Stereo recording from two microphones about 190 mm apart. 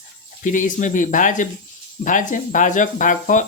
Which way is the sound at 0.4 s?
40° left (ahead or behind).